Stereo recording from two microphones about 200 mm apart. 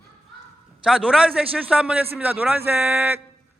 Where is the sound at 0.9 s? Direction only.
5° right (ahead or behind).